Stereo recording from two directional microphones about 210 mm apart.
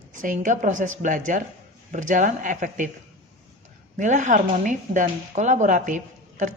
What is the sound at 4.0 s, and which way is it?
Speech, 35° right (ahead or behind).